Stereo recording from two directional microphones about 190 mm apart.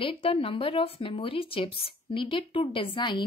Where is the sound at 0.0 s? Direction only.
30° left (ahead or behind).